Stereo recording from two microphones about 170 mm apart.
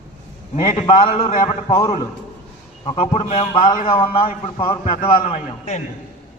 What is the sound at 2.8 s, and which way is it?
A man's voice, 35° left (ahead or behind).